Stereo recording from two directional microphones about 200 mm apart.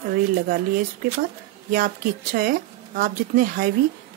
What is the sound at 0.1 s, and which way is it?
Speech, 45° right (ahead or behind).